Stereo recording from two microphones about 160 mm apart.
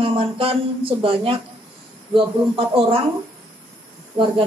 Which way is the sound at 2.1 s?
35° right (ahead or behind).